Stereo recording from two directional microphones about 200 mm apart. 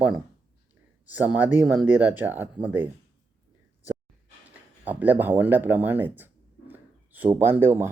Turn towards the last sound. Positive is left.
turn(degrees=-10)  # may be behind; listen again after turning